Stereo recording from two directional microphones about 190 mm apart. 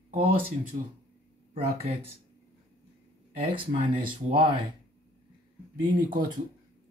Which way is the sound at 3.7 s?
45° right (ahead or behind).